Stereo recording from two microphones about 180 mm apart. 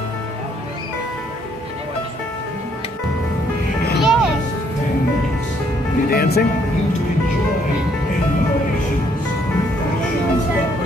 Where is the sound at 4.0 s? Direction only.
Centre (ahead or behind).